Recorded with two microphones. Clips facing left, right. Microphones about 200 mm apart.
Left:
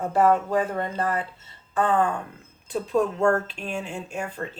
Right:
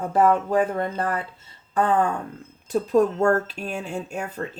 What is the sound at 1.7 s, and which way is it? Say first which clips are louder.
Speech: right 1 dB; 40° right (ahead or behind).